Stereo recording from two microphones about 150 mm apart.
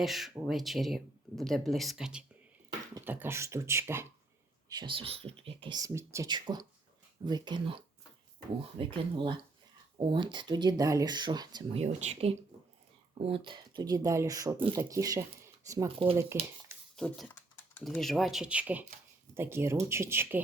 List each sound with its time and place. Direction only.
0.0 s speech: centre (ahead or behind); by 4.1 s 15° right (ahead or behind)
4.7 s speech: 30° right (ahead or behind)
11.8 s speech: 50° right (ahead or behind); by 16.5 s 15° right (ahead or behind)
16.9 s speech: 5° left (ahead or behind); by 20.4 s 15° right (ahead or behind)